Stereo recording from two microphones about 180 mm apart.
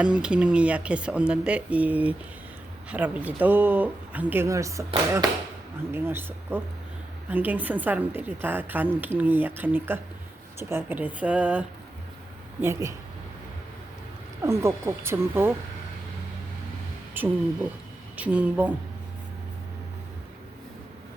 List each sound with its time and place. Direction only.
0.0 s a woman's voice: 5° right (ahead or behind)
5.9 s a woman's voice: 10° right (ahead or behind)
14.4 s a woman's voice: 15° right (ahead or behind)
17.2 s a woman's voice: 10° right (ahead or behind)